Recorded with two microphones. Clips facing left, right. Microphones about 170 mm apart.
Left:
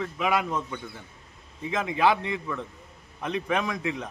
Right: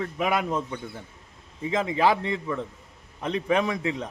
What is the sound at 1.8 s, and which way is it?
A man's voice, 35° right (ahead or behind).